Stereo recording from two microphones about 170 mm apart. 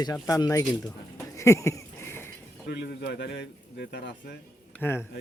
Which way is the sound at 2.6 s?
75° left (ahead or behind).